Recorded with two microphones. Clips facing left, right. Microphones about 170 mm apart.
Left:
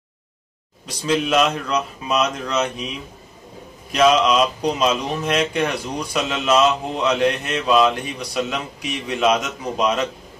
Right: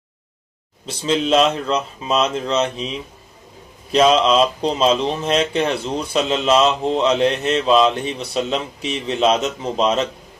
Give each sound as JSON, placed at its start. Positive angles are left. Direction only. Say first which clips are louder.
{"t": 0.8, "sound": "speech", "louder": "right 2 dB", "side_deg": -25}
{"t": 3.9, "sound": "speech", "louder": "right 2 dB", "side_deg": -30}